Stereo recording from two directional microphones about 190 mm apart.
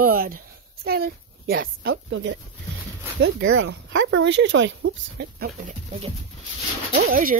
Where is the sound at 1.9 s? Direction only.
80° right.